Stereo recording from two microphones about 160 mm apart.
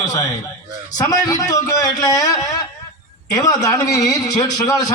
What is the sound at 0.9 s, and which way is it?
A man's voice, 20° left (ahead or behind).